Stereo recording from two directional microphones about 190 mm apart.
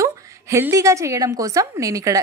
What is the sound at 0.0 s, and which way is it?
A woman's voice, 15° right (ahead or behind).